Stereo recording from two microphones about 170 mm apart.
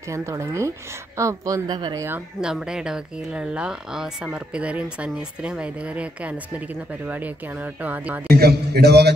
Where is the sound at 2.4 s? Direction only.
5° right (ahead or behind).